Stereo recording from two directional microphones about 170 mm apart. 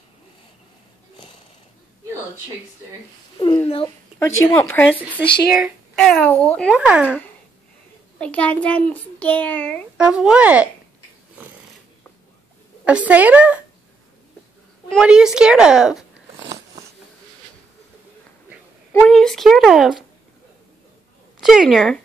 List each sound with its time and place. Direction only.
3.6 s speech: 30° left (ahead or behind)
4.2 s a child's voice: 15° left (ahead or behind)
6.7 s speech: 5° right (ahead or behind)
8.2 s a child's voice: 10° left (ahead or behind)
9.9 s speech: 5° right (ahead or behind)
12.8 s speech: 10° right (ahead or behind)
14.9 s speech: 5° right (ahead or behind)
18.9 s speech: 10° left (ahead or behind)
21.4 s speech: centre (ahead or behind)